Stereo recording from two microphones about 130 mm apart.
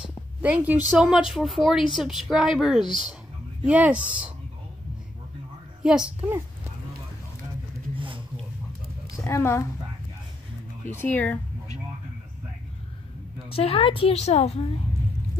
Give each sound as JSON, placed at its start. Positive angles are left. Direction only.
{"t": 0.4, "sound": "a woman's voice", "side_deg": -10}
{"t": 5.9, "sound": "a woman's voice", "side_deg": -5}
{"t": 7.9, "sound": "a sound", "side_deg": -40}
{"t": 9.1, "sound": "a woman's voice", "side_deg": 20}
{"t": 10.9, "sound": "speech", "side_deg": 15}
{"t": 13.5, "sound": "a woman's voice", "side_deg": 50}